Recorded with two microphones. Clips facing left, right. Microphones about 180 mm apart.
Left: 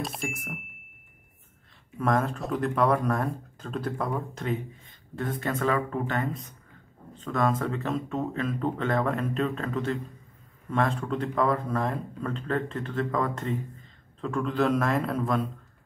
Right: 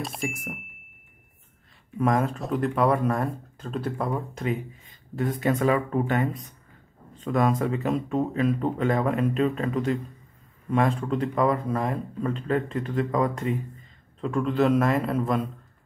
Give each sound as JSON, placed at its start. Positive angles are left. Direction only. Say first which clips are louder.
{"t": 0.0, "sound": "speech", "louder": "right 2 dB", "side_deg": 0}
{"t": 2.0, "sound": "speech", "louder": "right 2 dB", "side_deg": -5}
{"t": 5.2, "sound": "speech", "louder": "right 5 dB", "side_deg": -15}
{"t": 7.3, "sound": "speech", "louder": "right 3 dB", "side_deg": -15}
{"t": 7.6, "sound": "speech", "louder": "right 4 dB", "side_deg": -5}